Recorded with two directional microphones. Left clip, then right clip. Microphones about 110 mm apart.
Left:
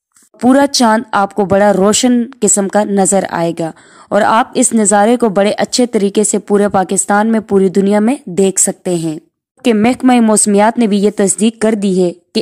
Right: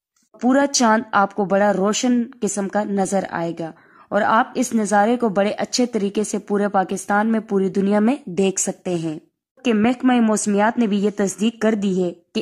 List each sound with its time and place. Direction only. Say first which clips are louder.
0.4 s a woman's voice: left 7 dB; 40° left (ahead or behind)